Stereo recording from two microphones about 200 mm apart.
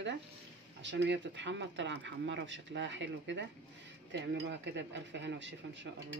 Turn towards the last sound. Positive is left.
turn(degrees=-65)  # may be behind; listen again after turning